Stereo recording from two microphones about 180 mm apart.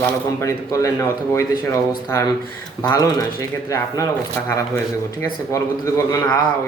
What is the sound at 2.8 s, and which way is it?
Speech, 20° left (ahead or behind).